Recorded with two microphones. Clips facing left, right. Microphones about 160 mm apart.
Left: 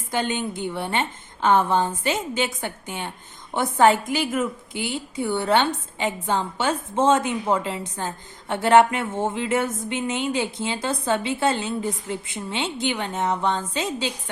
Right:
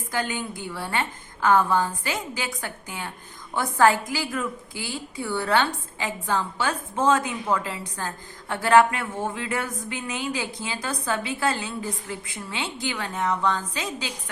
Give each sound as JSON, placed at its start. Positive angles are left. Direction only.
{"t": 0.1, "sound": "a woman's voice", "side_deg": 25}